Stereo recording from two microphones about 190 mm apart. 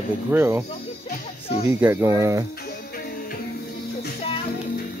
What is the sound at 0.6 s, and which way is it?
Music, 35° left (ahead or behind).